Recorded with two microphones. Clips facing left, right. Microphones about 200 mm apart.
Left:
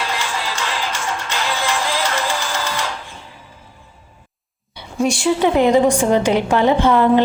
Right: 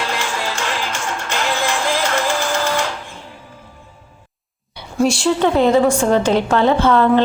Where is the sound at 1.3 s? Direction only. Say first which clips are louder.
Right 3 dB; 50° right (ahead or behind).